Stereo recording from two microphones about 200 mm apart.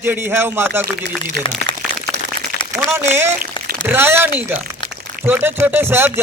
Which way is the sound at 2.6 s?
25° left (ahead or behind).